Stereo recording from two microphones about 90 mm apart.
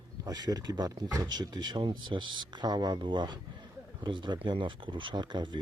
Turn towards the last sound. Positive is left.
turn(degrees=-55)  # may be behind; listen again after turning